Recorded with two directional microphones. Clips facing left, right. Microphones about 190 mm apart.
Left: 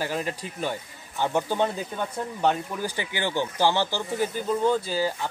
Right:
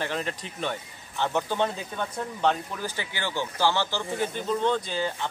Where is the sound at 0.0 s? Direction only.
5° left (ahead or behind).